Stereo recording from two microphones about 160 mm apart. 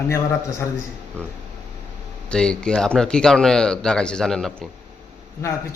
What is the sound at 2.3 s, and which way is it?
Speech, 5° left (ahead or behind).